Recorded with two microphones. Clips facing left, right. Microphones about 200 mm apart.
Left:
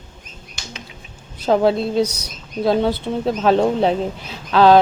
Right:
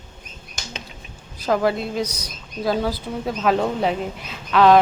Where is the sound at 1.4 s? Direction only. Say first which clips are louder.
Left 4 dB; 25° left (ahead or behind).